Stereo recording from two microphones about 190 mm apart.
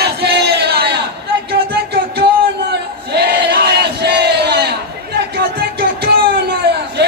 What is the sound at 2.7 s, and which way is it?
Battle cry, 60° right (ahead or behind).